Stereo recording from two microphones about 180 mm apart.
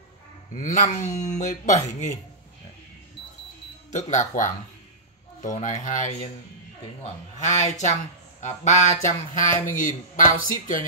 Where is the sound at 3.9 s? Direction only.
40° left (ahead or behind).